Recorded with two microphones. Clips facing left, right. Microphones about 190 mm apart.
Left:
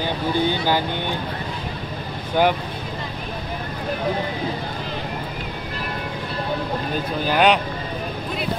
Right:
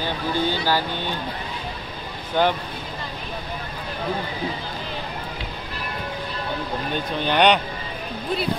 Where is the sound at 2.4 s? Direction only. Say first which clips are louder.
Left 2 dB; 10° left (ahead or behind).